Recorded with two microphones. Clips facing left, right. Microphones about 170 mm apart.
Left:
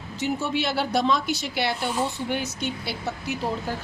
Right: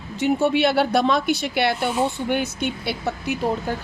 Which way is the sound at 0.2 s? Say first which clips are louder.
Right 7 dB; 60° right (ahead or behind).